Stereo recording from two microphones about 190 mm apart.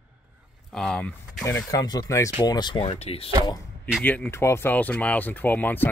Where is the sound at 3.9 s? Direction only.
5° left (ahead or behind).